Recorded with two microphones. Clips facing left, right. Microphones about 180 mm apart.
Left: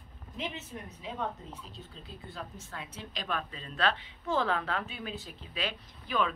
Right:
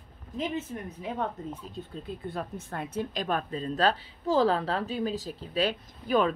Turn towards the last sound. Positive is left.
turn(degrees=-45)  # may be behind; listen again after turning